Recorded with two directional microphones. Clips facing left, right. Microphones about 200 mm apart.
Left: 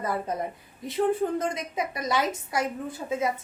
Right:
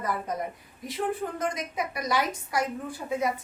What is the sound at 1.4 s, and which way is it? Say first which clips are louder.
A woman's voice: left 1 dB; 25° left (ahead or behind).